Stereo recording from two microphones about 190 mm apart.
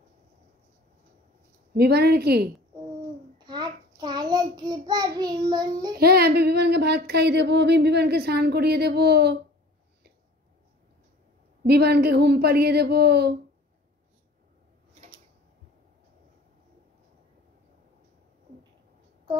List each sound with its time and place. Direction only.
1.8 s speech: 60° right (ahead or behind)
3.4 s child singing: 20° right (ahead or behind)
5.9 s speech: 55° right (ahead or behind)
11.6 s speech: 60° right (ahead or behind)